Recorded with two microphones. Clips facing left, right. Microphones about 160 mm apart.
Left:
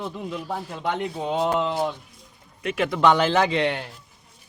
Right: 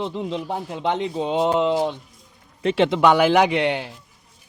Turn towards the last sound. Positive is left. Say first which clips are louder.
# right 3 dB
turn(degrees=-15)  # may be behind; listen again after turning